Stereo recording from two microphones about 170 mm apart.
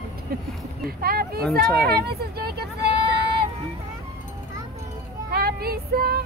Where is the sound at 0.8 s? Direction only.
60° right (ahead or behind).